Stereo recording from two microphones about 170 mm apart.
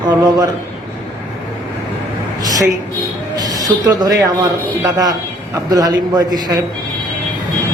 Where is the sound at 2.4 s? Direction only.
20° right (ahead or behind).